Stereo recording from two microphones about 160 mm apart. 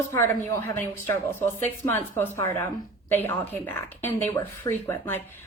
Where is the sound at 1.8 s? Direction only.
15° left (ahead or behind).